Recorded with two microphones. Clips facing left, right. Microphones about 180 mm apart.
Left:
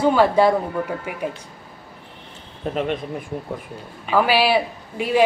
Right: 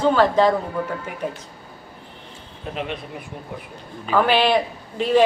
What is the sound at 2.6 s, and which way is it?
Speech, 45° left (ahead or behind).